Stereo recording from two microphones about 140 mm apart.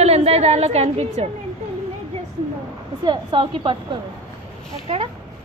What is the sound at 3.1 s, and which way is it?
Speech, 35° right (ahead or behind).